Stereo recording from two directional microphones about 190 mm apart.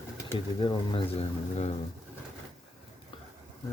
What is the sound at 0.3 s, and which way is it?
Speech, 25° left (ahead or behind).